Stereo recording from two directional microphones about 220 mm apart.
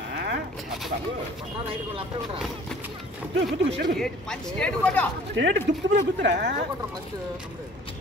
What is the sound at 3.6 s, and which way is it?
Speech, 50° right (ahead or behind).